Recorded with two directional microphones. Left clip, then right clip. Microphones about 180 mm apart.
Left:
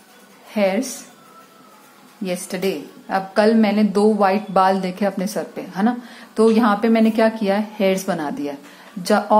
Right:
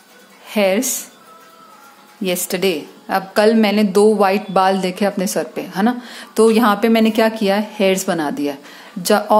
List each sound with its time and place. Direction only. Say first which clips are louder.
0.5 s a woman's voice: right 3 dB; 30° right (ahead or behind)
2.2 s a woman's voice: right 5 dB; 30° right (ahead or behind)